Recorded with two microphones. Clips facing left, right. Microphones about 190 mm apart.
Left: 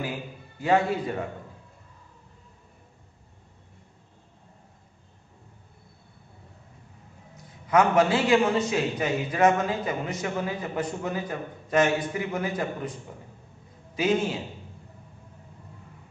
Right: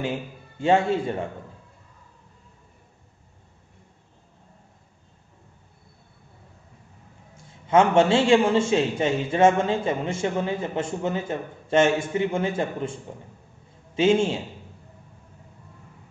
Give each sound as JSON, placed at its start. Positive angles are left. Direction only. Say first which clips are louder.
{"t": 0.0, "sound": "a man's voice", "louder": "right 4 dB", "side_deg": -25}
{"t": 7.3, "sound": "a man's voice", "louder": "right 3 dB", "side_deg": -25}